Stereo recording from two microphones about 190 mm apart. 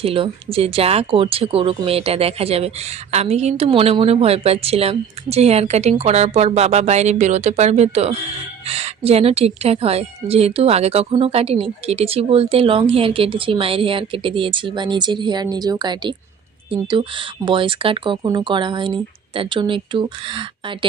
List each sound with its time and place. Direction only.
0.0 s a woman's voice: 30° right (ahead or behind)